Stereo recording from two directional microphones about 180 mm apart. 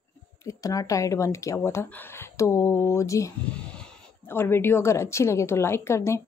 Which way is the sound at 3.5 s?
5° left (ahead or behind).